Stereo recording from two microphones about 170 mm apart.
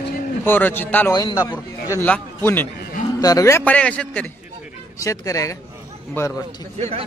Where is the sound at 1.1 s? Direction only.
20° left (ahead or behind).